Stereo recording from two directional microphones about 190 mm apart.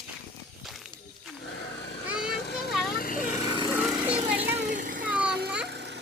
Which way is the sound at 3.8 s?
5° right (ahead or behind).